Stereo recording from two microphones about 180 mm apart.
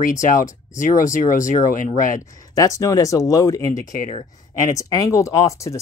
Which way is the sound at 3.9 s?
40° left (ahead or behind).